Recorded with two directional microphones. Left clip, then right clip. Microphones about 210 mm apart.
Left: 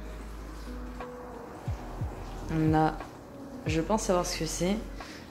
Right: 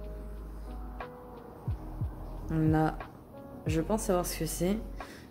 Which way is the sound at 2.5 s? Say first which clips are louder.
Left 3 dB; 15° right (ahead or behind).